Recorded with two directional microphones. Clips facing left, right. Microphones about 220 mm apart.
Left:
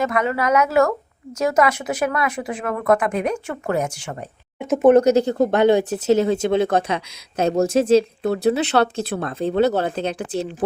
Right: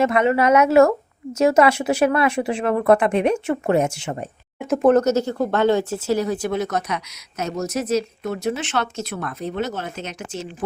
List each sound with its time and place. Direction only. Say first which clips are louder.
0.0 s a woman's voice: right 4 dB; 25° right (ahead or behind)
4.6 s speech: left 3 dB; centre (ahead or behind); by 10.5 s 35° left (ahead or behind)